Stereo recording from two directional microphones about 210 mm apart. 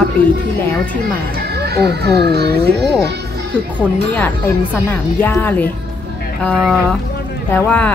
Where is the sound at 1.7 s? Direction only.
50° right (ahead or behind).